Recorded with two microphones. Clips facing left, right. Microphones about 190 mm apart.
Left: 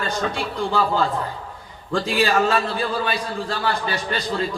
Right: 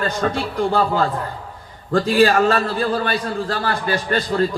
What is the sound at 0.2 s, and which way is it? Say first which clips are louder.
A man's voice: right 4 dB; 50° right (ahead or behind).